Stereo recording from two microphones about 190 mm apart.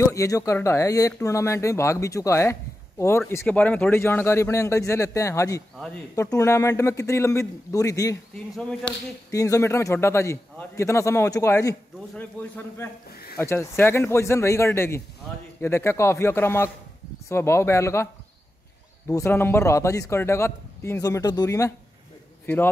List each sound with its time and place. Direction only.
0.0 s a man's voice: 15° left (ahead or behind)
8.5 s speech: 5° left (ahead or behind)
9.3 s a man's voice: 15° left (ahead or behind)
19.0 s a man's voice: 15° left (ahead or behind)